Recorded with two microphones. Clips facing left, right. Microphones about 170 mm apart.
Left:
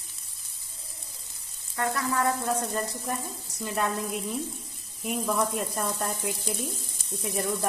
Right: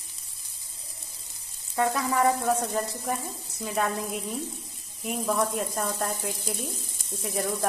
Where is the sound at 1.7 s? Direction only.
20° right (ahead or behind).